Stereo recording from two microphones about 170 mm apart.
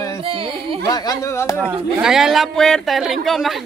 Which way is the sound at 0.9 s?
20° left (ahead or behind).